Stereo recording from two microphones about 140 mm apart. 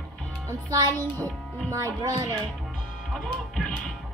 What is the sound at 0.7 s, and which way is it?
Music, 25° right (ahead or behind).